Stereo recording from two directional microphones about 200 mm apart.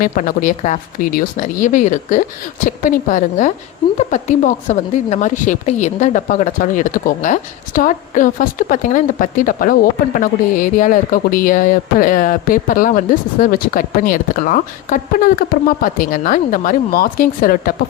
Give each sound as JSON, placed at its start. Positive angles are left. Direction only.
{"t": 0.0, "sound": "speech", "side_deg": 45}